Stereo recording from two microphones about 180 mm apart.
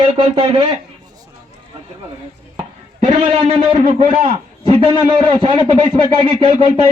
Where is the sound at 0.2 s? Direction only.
25° right (ahead or behind).